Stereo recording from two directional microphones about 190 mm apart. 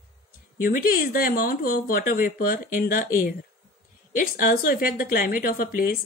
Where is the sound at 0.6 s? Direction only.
50° left (ahead or behind).